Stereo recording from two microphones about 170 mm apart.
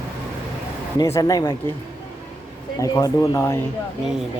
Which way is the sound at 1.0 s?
20° left (ahead or behind).